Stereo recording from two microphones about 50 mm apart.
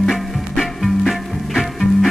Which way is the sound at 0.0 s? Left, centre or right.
Centre.